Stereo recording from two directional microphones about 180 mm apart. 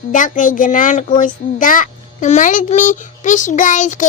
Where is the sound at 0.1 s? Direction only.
45° left (ahead or behind).